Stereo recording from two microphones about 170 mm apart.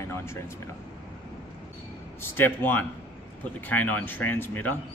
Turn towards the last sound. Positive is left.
turn(degrees=10)  # may be behind; listen again after turning